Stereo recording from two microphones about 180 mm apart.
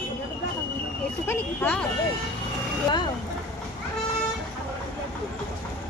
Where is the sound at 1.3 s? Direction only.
10° left (ahead or behind).